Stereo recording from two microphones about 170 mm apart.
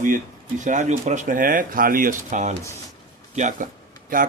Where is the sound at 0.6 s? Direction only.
45° right (ahead or behind).